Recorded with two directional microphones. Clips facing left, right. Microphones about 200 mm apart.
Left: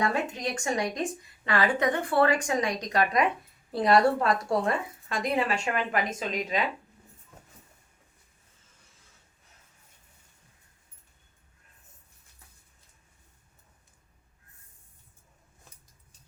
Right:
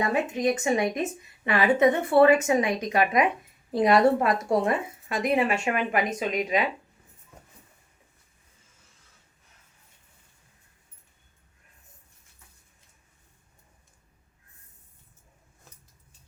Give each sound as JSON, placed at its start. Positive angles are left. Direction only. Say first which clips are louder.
{"t": 0.0, "sound": "a woman's voice", "louder": "right 4 dB", "side_deg": -20}